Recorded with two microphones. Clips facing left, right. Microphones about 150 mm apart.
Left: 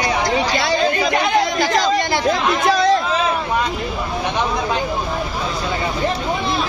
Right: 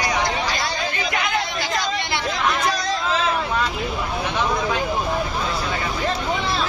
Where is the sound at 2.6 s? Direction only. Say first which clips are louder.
Left 8 dB; 60° left (ahead or behind).